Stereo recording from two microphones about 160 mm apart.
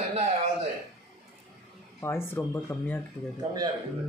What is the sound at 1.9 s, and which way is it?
Speech, 15° left (ahead or behind).